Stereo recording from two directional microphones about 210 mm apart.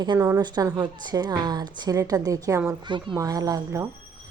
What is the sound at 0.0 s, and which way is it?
A woman's voice, 20° right (ahead or behind).